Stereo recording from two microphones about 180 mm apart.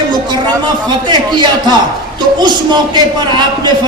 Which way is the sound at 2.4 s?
25° right (ahead or behind).